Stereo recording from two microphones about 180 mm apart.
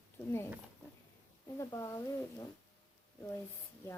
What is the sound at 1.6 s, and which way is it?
Speech, 15° left (ahead or behind).